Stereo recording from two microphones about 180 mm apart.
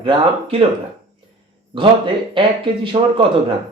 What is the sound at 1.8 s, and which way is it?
Speech, 30° right (ahead or behind).